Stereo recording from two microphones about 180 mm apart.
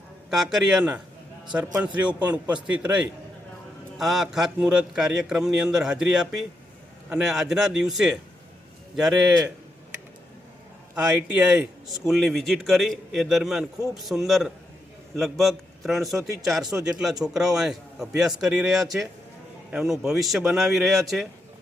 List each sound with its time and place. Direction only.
0.3 s a man's voice: centre (ahead or behind)
10.9 s a man's voice: 5° right (ahead or behind)